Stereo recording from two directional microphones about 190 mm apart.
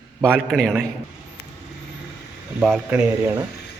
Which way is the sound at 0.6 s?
5° left (ahead or behind).